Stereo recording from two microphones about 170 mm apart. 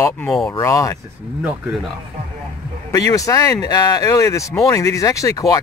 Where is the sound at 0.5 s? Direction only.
15° left (ahead or behind).